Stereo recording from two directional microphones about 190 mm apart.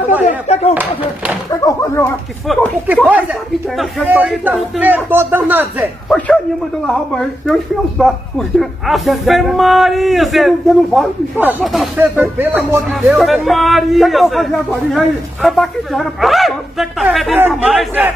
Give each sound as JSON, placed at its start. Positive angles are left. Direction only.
{"t": 0.2, "sound": "speech", "side_deg": 35}
{"t": 1.7, "sound": "speech", "side_deg": 15}
{"t": 2.4, "sound": "speech", "side_deg": 0}
{"t": 6.0, "sound": "speech", "side_deg": 5}